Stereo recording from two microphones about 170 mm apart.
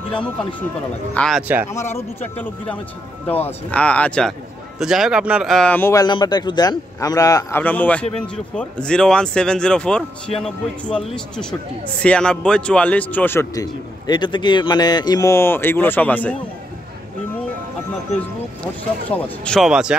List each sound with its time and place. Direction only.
0.1 s speech: 10° left (ahead or behind)
1.7 s speech: 15° left (ahead or behind)
18.6 s speech: 10° left (ahead or behind)